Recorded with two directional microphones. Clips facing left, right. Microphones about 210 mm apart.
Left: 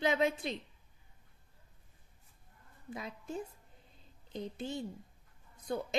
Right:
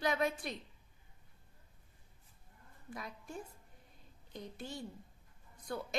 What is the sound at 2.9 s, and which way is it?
A woman's voice, 25° left (ahead or behind).